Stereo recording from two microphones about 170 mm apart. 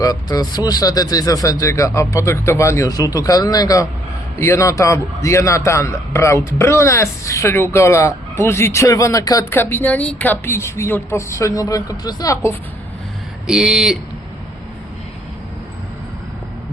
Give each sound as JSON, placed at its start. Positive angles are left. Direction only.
{"t": 0.0, "sound": "a man's voice", "side_deg": 20}
{"t": 13.5, "sound": "speech", "side_deg": -5}